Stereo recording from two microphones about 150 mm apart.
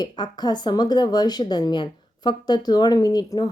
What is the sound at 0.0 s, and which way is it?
A woman's voice, 30° left (ahead or behind).